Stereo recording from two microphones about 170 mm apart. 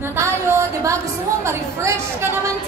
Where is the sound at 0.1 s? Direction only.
15° right (ahead or behind).